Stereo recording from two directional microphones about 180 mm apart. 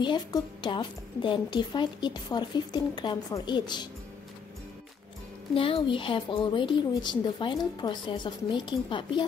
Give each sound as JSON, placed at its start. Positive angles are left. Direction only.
{"t": 0.0, "sound": "a woman's voice", "side_deg": 25}
{"t": 5.5, "sound": "a woman's voice", "side_deg": 30}